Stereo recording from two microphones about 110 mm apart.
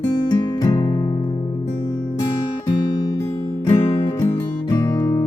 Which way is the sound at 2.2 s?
45° left (ahead or behind).